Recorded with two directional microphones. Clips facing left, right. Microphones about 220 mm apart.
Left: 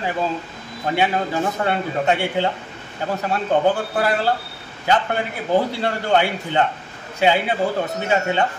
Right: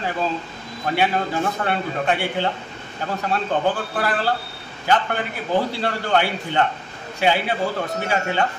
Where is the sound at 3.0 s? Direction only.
20° left (ahead or behind).